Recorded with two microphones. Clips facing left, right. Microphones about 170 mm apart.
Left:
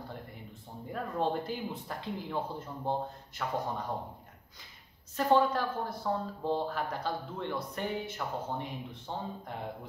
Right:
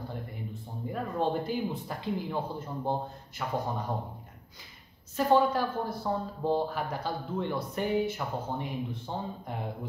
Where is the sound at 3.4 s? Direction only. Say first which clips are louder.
Right 1 dB; 5° right (ahead or behind).